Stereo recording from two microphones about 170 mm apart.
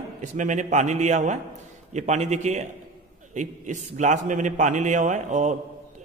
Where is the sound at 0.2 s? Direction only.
45° right (ahead or behind).